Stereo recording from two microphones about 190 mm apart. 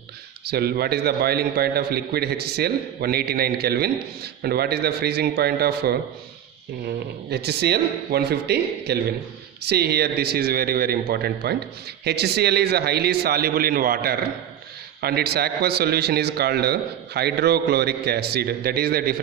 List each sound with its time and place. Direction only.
0.5 s a man's voice: 55° right (ahead or behind)
7.2 s a man's voice: 60° right (ahead or behind)